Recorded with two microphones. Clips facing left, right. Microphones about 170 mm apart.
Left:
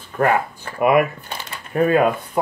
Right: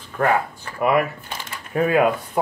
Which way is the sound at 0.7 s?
15° left (ahead or behind).